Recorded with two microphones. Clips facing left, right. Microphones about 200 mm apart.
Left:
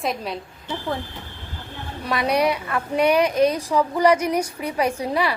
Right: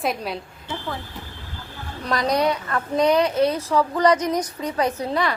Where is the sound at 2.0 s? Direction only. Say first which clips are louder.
Even; 5° left (ahead or behind).